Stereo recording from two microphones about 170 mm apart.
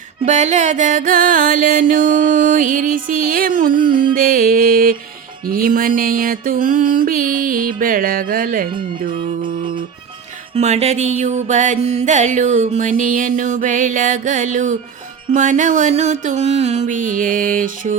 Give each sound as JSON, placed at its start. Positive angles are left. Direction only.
{"t": 0.3, "sound": "music", "side_deg": -45}
{"t": 4.1, "sound": "mantra", "side_deg": -55}
{"t": 10.5, "sound": "music", "side_deg": -40}